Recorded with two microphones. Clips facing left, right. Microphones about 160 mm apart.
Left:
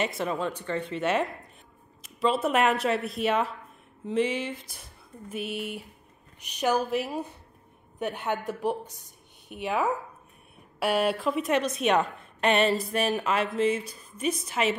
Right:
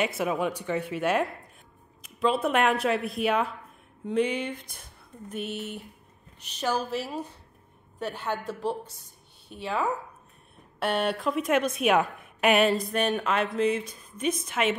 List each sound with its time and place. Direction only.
0.0 s a woman's voice: 5° right (ahead or behind); by 9.8 s 15° left (ahead or behind)
10.8 s a woman's voice: 5° left (ahead or behind)